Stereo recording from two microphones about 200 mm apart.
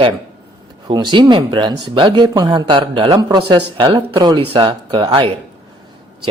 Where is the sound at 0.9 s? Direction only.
20° right (ahead or behind).